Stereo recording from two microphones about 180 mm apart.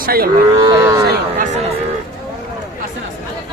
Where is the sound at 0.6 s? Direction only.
20° right (ahead or behind).